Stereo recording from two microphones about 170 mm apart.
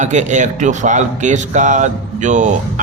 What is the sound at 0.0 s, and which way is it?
A man's voice, 45° right (ahead or behind).